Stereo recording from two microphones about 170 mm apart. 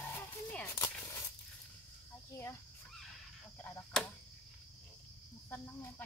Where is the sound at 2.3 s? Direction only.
15° left (ahead or behind).